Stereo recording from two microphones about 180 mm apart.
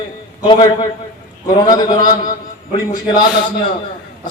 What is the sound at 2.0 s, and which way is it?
A man's voice, 20° left (ahead or behind).